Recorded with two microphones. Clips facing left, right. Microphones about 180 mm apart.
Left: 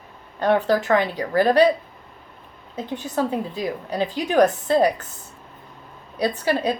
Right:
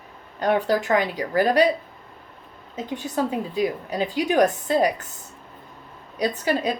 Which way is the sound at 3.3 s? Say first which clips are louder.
Right 1 dB; 15° right (ahead or behind).